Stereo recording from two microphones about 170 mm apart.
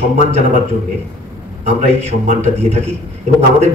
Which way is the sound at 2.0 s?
45° right (ahead or behind).